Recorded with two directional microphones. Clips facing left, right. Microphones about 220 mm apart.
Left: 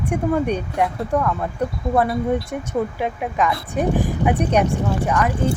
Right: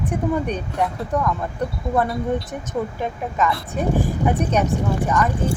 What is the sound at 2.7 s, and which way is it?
A woman's voice, 10° left (ahead or behind).